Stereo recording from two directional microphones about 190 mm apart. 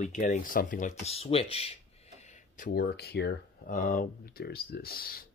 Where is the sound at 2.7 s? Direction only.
60° left (ahead or behind).